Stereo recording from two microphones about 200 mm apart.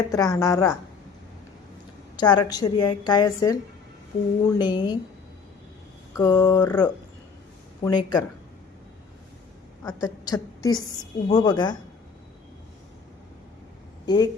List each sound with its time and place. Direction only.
0.1 s a woman's voice: 15° left (ahead or behind)
2.1 s a woman's voice: 20° left (ahead or behind)
6.1 s a woman's voice: 20° left (ahead or behind)
6.6 s a woman's voice: 5° left (ahead or behind)
7.9 s a woman's voice: 20° left (ahead or behind)
9.8 s a woman's voice: 20° left (ahead or behind)
14.0 s speech: 20° left (ahead or behind)